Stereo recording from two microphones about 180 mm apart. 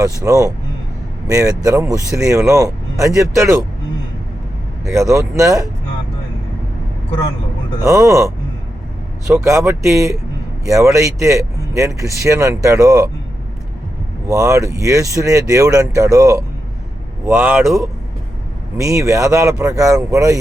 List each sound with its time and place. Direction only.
0.0 s speech: 20° right (ahead or behind)
4.9 s speech: 15° right (ahead or behind)
7.9 s speech: 15° right (ahead or behind)
14.3 s speech: 15° right (ahead or behind)
17.2 s speech: 5° right (ahead or behind)